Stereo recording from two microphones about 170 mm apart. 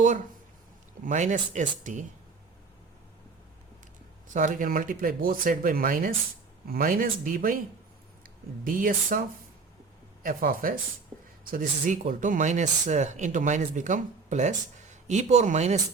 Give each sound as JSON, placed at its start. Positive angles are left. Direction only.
{"t": 1.0, "sound": "speech", "side_deg": -45}
{"t": 4.4, "sound": "speech", "side_deg": -50}
{"t": 10.2, "sound": "speech", "side_deg": -55}